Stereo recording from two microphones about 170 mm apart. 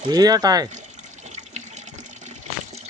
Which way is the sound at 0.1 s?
20° right (ahead or behind).